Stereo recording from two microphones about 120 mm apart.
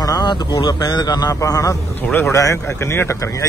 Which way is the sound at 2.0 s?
15° left (ahead or behind).